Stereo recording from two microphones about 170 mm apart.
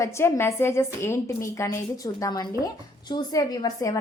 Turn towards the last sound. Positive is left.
turn(degrees=20)  # may be behind; listen again after turning